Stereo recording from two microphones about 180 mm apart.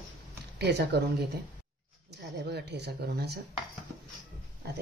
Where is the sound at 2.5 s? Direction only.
65° right (ahead or behind).